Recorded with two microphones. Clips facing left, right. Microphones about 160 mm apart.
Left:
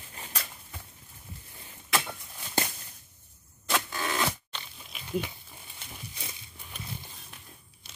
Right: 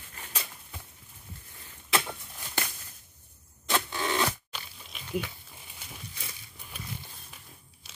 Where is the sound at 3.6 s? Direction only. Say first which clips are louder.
Right 1 dB; centre (ahead or behind).